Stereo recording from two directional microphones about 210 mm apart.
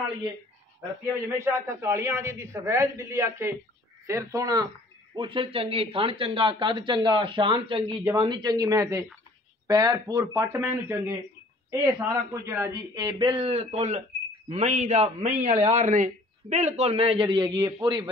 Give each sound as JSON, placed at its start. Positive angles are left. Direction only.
{"t": 1.4, "sound": "a man's voice", "side_deg": -10}